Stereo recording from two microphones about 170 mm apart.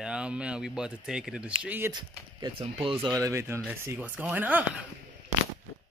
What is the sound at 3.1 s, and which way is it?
Speech, 15° right (ahead or behind).